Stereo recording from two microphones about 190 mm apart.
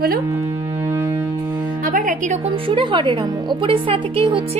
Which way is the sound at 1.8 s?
45° right (ahead or behind).